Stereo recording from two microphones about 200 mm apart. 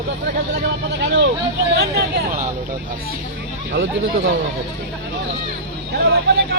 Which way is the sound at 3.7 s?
65° right (ahead or behind).